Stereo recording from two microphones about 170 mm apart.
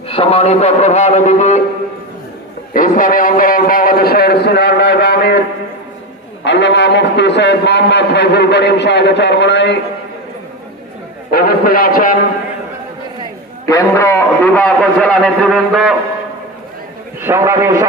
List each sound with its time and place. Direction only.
0.1 s a man's voice: 35° left (ahead or behind)
2.7 s a man's voice: 55° left (ahead or behind); by 5.4 s 75° left (ahead or behind)
6.4 s a man's voice: 90° left
11.3 s a man's voice: 60° left (ahead or behind)
13.7 s a man's voice: 20° left (ahead or behind); by 16.0 s centre (ahead or behind)
17.2 s a man's voice: 15° right (ahead or behind)